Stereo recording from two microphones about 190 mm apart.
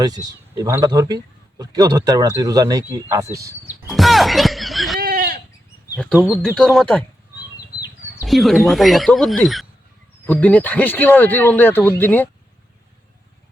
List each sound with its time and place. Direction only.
0.0 s speech: 20° right (ahead or behind)
3.8 s music: centre (ahead or behind)
4.9 s goat: 50° right (ahead or behind)
6.3 s speech: 5° left (ahead or behind)
8.2 s speech: centre (ahead or behind)